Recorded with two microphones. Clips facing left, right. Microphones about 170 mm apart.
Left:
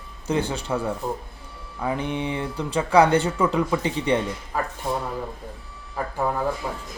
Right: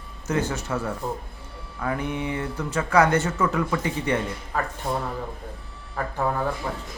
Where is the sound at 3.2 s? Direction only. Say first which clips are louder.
Left 2 dB; 15° left (ahead or behind).